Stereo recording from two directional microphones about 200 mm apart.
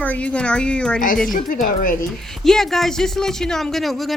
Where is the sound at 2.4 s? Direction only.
Centre (ahead or behind).